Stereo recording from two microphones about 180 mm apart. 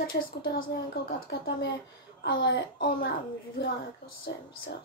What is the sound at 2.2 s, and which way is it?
Speech, 70° left (ahead or behind).